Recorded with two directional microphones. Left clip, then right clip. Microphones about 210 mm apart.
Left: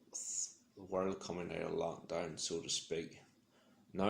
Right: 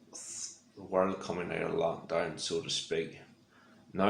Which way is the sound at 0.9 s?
40° left (ahead or behind).